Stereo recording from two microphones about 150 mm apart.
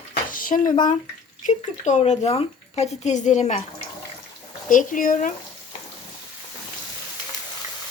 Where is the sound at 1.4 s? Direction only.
55° left (ahead or behind).